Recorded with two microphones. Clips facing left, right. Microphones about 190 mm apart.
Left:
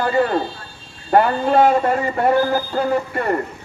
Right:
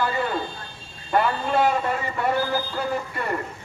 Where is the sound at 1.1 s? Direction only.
50° left (ahead or behind).